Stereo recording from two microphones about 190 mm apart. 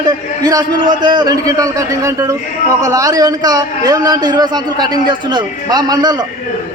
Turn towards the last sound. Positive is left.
turn(degrees=-20)  # may be behind; listen again after turning